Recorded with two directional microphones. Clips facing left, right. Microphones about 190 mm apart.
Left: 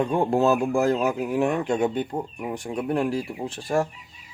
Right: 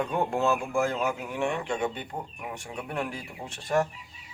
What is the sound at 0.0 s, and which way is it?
Speech, 30° left (ahead or behind).